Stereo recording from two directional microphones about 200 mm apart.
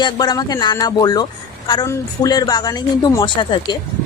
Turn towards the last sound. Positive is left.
turn(degrees=25)  # may be behind; listen again after turning